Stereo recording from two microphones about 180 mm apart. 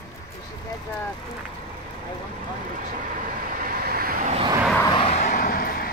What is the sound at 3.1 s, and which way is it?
Vehicle, 50° right (ahead or behind).